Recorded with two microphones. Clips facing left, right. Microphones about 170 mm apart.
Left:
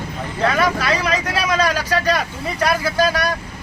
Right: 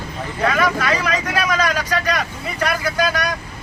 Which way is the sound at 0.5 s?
30° left (ahead or behind).